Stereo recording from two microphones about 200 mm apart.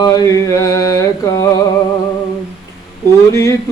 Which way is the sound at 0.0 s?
15° left (ahead or behind).